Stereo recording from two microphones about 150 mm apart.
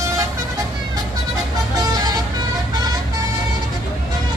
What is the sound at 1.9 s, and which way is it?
Vehicle, 25° right (ahead or behind).